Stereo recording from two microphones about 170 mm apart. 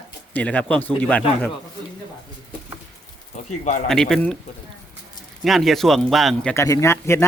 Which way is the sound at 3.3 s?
40° left (ahead or behind).